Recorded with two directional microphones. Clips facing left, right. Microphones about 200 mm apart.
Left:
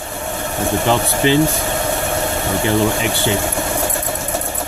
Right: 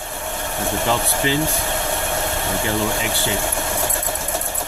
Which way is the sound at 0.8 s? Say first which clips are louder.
Left 6 dB; 25° left (ahead or behind).